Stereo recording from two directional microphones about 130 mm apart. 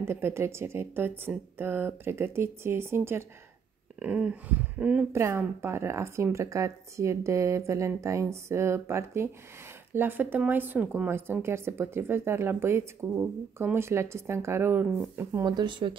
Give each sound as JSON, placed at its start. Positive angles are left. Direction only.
{"t": 0.0, "sound": "a woman's voice", "side_deg": -20}
{"t": 15.4, "sound": "speech", "side_deg": -35}